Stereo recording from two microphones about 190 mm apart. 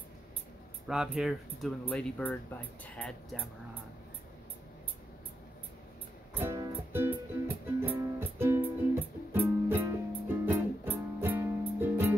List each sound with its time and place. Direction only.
0.8 s speech: 5° right (ahead or behind)
6.3 s music: 15° right (ahead or behind)